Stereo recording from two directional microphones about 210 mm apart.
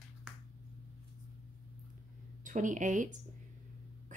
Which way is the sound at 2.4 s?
35° right (ahead or behind).